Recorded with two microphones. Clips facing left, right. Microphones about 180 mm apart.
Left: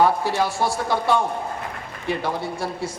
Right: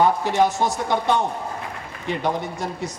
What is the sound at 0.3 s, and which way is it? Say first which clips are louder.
A man's voice: right 3 dB; 20° right (ahead or behind).